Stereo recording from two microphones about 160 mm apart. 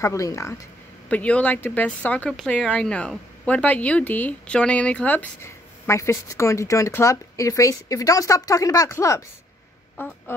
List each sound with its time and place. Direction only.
0.0 s speech: 20° left (ahead or behind)
1.0 s speech: 10° left (ahead or behind)